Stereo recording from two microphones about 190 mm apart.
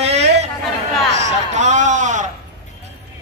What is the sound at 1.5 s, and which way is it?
Speech, 40° right (ahead or behind).